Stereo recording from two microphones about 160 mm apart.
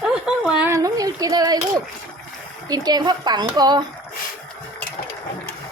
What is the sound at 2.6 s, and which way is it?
A child's voice, 25° right (ahead or behind).